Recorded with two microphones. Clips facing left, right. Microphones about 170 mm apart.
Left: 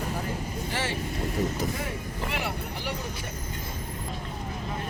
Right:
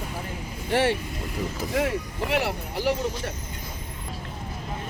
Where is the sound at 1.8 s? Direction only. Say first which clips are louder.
Right 8 dB; 75° right (ahead or behind).